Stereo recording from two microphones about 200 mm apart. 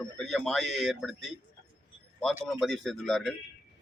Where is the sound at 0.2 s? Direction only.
Centre (ahead or behind).